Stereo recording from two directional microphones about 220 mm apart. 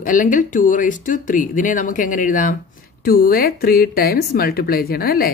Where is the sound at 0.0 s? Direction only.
40° left (ahead or behind).